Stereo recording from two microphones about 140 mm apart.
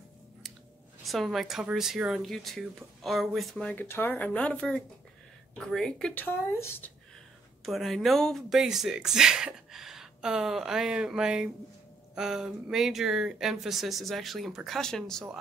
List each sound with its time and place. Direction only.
1.0 s speech: centre (ahead or behind)
3.7 s speech: 15° left (ahead or behind)
7.6 s speech: centre (ahead or behind)